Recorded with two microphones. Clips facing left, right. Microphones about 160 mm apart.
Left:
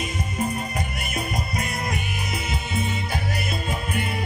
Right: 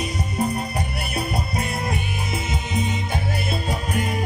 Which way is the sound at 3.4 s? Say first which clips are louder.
Right 2 dB; 40° right (ahead or behind).